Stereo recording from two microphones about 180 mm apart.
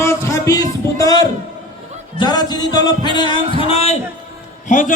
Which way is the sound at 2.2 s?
25° left (ahead or behind).